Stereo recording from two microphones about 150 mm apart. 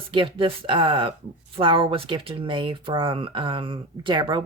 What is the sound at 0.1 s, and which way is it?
Speech, 35° right (ahead or behind).